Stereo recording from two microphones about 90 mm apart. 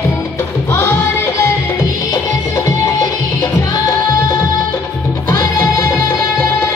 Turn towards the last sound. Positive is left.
turn(degrees=35)  # may be behind; listen again after turning